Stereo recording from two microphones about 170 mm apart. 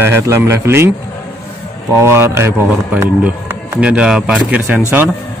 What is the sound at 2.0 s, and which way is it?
Speech, 15° right (ahead or behind).